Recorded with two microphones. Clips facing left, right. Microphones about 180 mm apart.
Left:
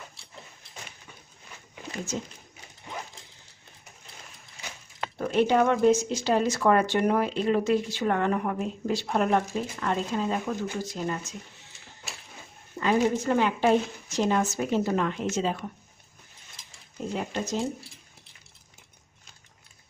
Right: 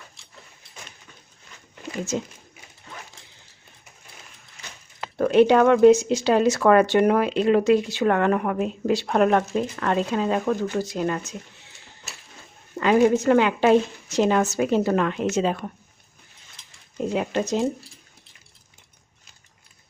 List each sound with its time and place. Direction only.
5.1 s speech: 75° right (ahead or behind)
12.8 s speech: 80° right; by 15.6 s 65° right (ahead or behind)
17.2 s speech: 75° right (ahead or behind)